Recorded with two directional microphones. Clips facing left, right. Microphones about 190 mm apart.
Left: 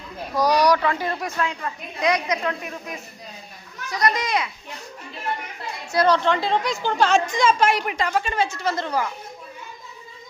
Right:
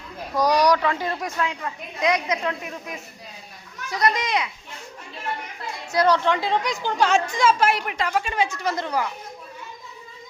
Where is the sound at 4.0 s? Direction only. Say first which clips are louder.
Even; 25° right (ahead or behind).